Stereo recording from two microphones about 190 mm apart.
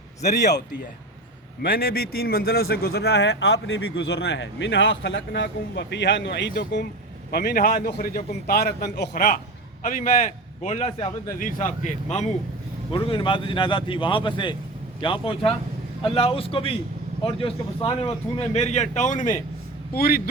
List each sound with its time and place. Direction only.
1.6 s a man's voice: 50° left (ahead or behind)
7.3 s a man's voice: 55° left (ahead or behind); by 11.1 s 35° left (ahead or behind)
11.3 s a man's voice: 45° left (ahead or behind)
12.9 s a man's voice: 25° left (ahead or behind)
20.0 s a man's voice: 50° left (ahead or behind)